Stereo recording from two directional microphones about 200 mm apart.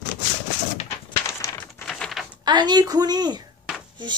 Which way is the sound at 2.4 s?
20° right (ahead or behind).